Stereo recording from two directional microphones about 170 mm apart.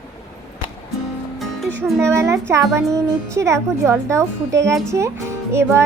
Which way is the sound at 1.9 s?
15° right (ahead or behind).